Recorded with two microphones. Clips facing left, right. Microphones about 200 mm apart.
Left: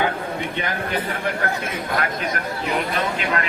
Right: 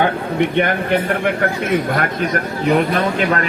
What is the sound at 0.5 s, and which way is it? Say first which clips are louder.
Speech: right 9 dB; 65° right (ahead or behind).